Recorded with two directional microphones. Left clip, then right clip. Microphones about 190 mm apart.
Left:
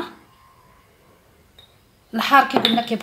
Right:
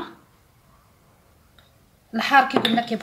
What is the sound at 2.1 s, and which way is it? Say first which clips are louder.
Speech: left 2 dB; 10° left (ahead or behind).